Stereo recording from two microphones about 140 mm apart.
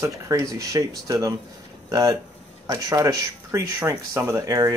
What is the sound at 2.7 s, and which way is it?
Speech, 25° right (ahead or behind).